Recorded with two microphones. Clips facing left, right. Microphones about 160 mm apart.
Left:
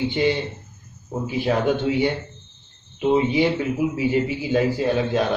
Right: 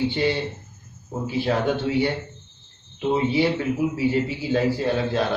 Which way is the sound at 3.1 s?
15° left (ahead or behind).